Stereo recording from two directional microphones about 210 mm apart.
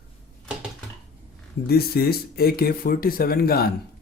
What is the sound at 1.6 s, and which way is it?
Speech, 50° left (ahead or behind).